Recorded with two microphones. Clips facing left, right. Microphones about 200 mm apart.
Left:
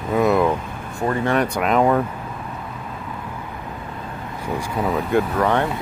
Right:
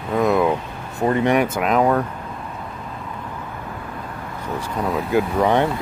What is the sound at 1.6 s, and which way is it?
Speech, centre (ahead or behind).